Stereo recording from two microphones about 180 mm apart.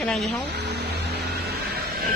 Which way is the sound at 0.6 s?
70° right (ahead or behind).